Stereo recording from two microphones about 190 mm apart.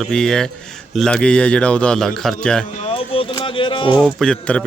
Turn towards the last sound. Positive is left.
turn(degrees=5)  # may be behind; listen again after turning